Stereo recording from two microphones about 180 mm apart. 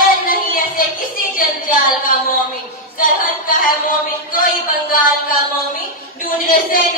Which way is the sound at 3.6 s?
50° left (ahead or behind).